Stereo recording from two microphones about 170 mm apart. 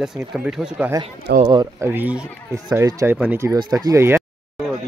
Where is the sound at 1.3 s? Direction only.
75° right (ahead or behind).